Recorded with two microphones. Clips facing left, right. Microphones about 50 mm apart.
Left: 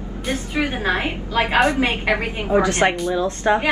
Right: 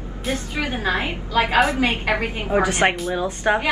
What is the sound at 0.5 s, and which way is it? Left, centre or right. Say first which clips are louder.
A woman's voice: left 3 dB; left.